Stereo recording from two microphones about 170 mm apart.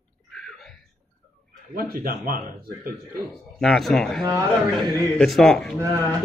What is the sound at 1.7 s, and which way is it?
Speech, 60° right (ahead or behind).